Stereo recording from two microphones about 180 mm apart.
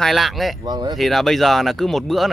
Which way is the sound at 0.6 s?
25° right (ahead or behind).